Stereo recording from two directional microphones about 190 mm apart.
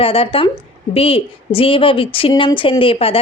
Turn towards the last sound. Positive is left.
turn(degrees=30)  # may be behind; listen again after turning